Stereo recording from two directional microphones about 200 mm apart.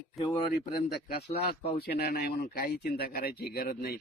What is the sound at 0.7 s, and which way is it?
Speech, 50° left (ahead or behind).